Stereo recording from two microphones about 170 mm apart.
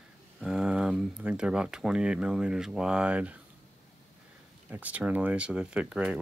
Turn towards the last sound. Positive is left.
turn(degrees=-5)  # may be behind; listen again after turning